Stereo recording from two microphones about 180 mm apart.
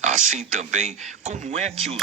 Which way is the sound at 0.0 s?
45° right (ahead or behind).